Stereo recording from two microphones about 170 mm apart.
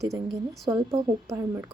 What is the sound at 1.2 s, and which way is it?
Speech, 15° right (ahead or behind).